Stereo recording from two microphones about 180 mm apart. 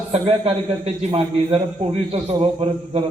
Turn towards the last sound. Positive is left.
turn(degrees=-35)  # may be behind; listen again after turning